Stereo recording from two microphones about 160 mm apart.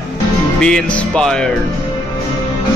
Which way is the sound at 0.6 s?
5° left (ahead or behind).